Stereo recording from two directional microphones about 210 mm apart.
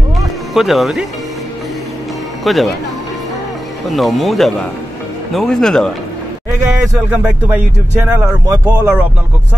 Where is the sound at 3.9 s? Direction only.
Centre (ahead or behind).